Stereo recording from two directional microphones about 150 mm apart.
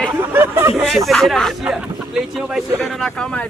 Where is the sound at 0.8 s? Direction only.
Centre (ahead or behind).